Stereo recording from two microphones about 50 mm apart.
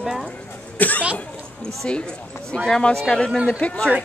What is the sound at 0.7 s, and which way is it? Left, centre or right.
Speech, left.